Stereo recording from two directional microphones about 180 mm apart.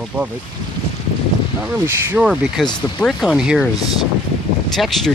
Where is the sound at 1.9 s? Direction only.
15° right (ahead or behind).